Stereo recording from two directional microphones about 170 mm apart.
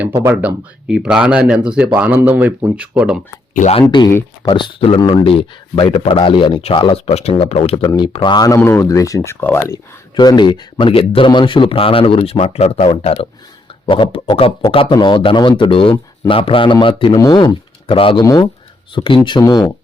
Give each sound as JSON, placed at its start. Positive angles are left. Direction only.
{"t": 0.1, "sound": "speech", "side_deg": -15}
{"t": 3.5, "sound": "speech", "side_deg": 45}
{"t": 3.8, "sound": "speech", "side_deg": 20}
{"t": 7.9, "sound": "speech", "side_deg": 25}